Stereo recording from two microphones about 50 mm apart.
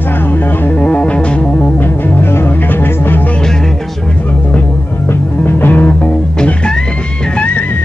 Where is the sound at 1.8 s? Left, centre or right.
Left.